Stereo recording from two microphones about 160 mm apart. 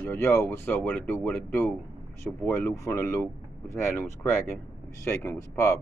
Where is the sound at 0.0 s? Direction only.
15° left (ahead or behind).